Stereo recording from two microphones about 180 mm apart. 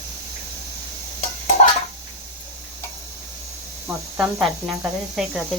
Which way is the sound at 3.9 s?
5° right (ahead or behind).